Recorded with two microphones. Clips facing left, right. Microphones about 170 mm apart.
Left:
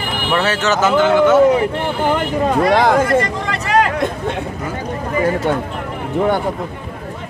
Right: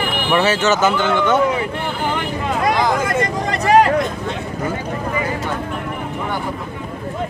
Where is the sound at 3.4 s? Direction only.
40° right (ahead or behind).